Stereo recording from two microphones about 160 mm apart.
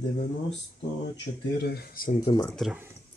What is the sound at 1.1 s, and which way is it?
Speech, 90° left.